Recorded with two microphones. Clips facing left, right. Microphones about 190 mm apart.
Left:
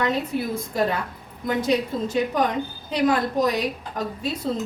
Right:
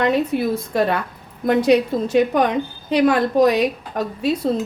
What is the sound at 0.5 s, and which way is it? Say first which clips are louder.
A woman's voice: right 4 dB; 70° right (ahead or behind).